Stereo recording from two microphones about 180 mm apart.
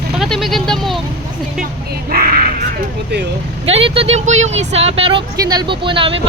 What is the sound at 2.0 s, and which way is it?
Speech, 55° right (ahead or behind).